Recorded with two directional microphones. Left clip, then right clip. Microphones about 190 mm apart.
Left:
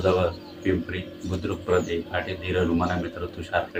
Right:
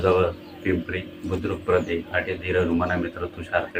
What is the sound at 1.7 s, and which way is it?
A man's voice, 15° left (ahead or behind).